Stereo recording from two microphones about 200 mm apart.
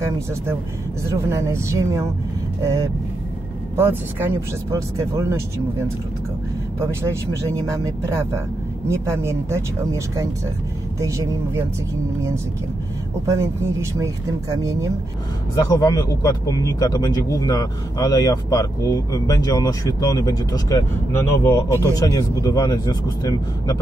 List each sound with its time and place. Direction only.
1.1 s speech: 15° right (ahead or behind)
6.8 s speech: 10° right (ahead or behind)
13.3 s speech: 15° right (ahead or behind)
15.6 s speech: 20° left (ahead or behind)